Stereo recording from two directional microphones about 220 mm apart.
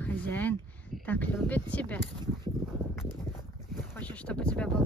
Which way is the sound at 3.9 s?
5° left (ahead or behind).